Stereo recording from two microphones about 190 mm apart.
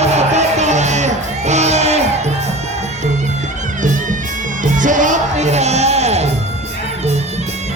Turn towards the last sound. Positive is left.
turn(degrees=-35)  # may be behind; listen again after turning